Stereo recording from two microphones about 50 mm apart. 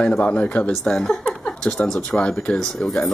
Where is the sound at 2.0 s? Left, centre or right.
Centre.